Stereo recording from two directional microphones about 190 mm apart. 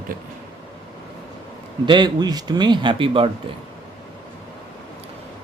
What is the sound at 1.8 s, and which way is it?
Speech, 25° right (ahead or behind).